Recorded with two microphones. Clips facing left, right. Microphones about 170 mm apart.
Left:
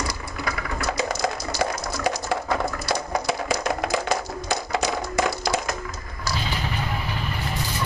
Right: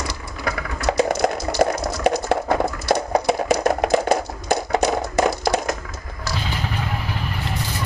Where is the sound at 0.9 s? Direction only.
60° right (ahead or behind).